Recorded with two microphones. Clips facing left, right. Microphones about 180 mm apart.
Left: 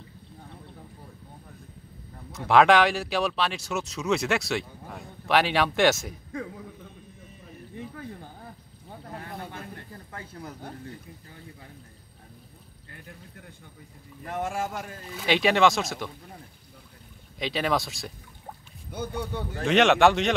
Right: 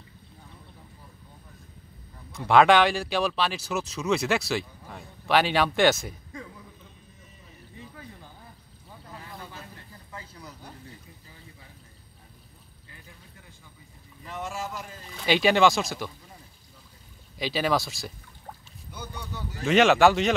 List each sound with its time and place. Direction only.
2.3 s speech: centre (ahead or behind)
6.3 s a sound: 60° left (ahead or behind)
14.2 s speech: 55° left (ahead or behind)
15.0 s speech: centre (ahead or behind)
17.4 s speech: centre (ahead or behind)
18.9 s speech: 55° left (ahead or behind)
19.6 s speech: centre (ahead or behind)